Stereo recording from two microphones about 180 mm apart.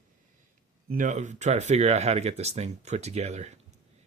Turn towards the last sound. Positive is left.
turn(degrees=-40)  # may be behind; listen again after turning